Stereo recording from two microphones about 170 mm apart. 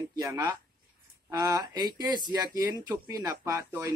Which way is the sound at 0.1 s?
20° right (ahead or behind).